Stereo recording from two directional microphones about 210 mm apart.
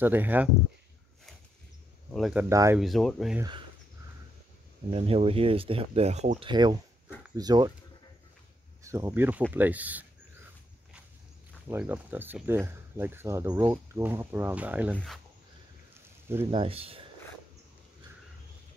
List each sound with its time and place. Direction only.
0.0 s speech: 10° right (ahead or behind)
2.1 s speech: centre (ahead or behind)
2.5 s speech: 15° right (ahead or behind)
2.8 s speech: centre (ahead or behind)
4.9 s speech: 30° right (ahead or behind)
6.5 s speech: 20° right (ahead or behind)
8.8 s speech: 15° right (ahead or behind)
11.6 s speech: 10° right (ahead or behind)
15.9 s a sound: 10° right (ahead or behind)
16.4 s speech: 25° right (ahead or behind)